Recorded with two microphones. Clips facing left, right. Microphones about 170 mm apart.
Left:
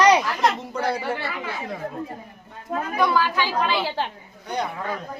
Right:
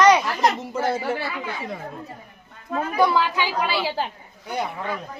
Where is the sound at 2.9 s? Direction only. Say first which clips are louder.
Right 1 dB; 20° right (ahead or behind); by 4.0 s 5° right (ahead or behind).